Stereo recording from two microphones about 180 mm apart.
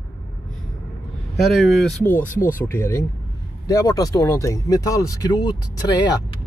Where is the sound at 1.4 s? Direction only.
Centre (ahead or behind).